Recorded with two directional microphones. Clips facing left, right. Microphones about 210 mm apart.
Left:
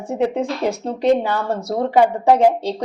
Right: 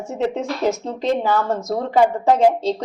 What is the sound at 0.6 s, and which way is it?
A woman's voice, 15° left (ahead or behind).